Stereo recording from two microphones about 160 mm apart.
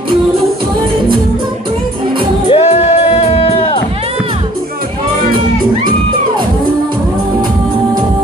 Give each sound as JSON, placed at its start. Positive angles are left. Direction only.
{"t": 2.5, "sound": "music", "side_deg": 40}